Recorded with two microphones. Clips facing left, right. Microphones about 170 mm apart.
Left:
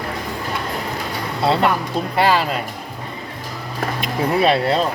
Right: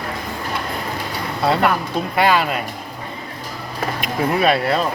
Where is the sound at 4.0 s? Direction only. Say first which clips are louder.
Left 1 dB; 30° left (ahead or behind).